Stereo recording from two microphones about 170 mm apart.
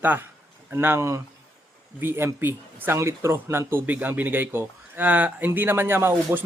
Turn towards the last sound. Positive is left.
turn(degrees=-15)  # may be behind; listen again after turning